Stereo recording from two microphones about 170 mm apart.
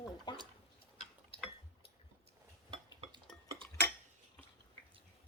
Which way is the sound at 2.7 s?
30° right (ahead or behind).